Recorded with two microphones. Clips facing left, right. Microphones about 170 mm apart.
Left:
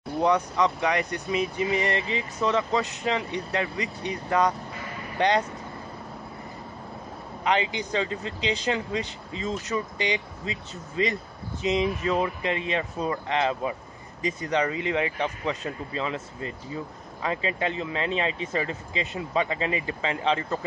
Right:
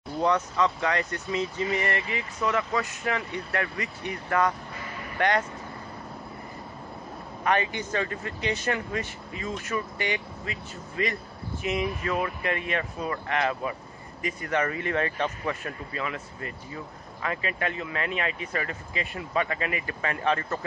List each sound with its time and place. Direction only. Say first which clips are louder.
0.2 s speech: left 2 dB; 15° left (ahead or behind)
7.4 s speech: left 1 dB; 15° left (ahead or behind)